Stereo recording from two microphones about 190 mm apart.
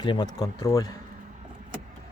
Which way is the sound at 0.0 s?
25° left (ahead or behind).